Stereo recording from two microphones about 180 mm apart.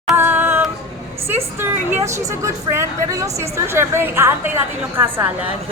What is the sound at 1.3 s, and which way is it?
A woman's voice, 15° right (ahead or behind).